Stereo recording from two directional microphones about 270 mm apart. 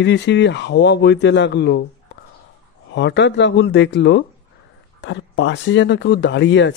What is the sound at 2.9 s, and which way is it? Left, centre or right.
Speech, left.